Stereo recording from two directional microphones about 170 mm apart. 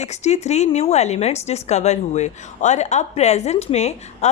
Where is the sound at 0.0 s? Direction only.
40° left (ahead or behind).